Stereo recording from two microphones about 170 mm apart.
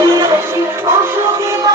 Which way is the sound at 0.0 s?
20° right (ahead or behind).